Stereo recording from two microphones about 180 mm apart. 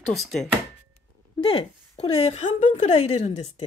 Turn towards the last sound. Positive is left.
turn(degrees=35)  # may be behind; listen again after turning